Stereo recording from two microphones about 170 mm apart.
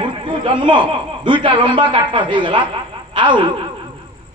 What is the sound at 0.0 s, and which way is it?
A man's voice, 30° right (ahead or behind).